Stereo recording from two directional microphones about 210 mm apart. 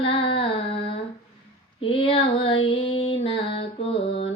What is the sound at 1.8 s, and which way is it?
Female singing, 25° left (ahead or behind).